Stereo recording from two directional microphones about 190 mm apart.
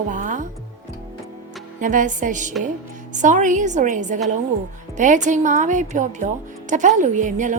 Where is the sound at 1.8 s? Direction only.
40° right (ahead or behind).